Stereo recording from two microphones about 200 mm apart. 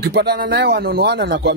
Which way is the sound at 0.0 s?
55° right (ahead or behind).